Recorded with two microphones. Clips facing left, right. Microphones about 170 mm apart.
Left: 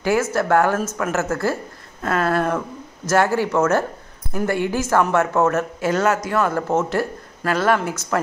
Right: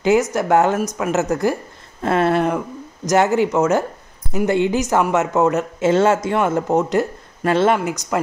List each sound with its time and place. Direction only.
0.0 s speech: 20° right (ahead or behind)